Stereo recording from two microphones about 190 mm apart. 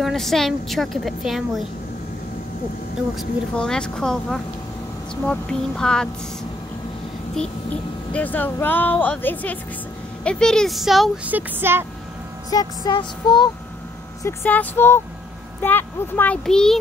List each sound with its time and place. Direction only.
0.0 s a woman's voice: centre (ahead or behind)
3.2 s a woman's voice: 5° left (ahead or behind)
7.3 s a woman's voice: 5° left (ahead or behind); by 11.8 s 10° right (ahead or behind)
12.4 s speech: 20° left (ahead or behind)
14.2 s a child's voice: 10° left (ahead or behind)